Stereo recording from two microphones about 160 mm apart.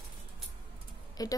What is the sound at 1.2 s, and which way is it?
Speech, 25° left (ahead or behind).